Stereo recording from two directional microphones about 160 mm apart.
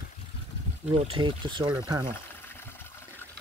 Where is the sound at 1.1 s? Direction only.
30° right (ahead or behind).